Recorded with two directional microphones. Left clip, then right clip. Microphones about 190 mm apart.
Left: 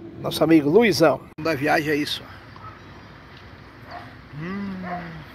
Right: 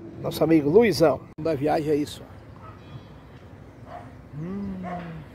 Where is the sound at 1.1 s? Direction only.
5° left (ahead or behind).